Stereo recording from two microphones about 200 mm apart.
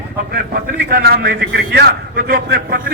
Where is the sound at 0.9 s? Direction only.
50° right (ahead or behind).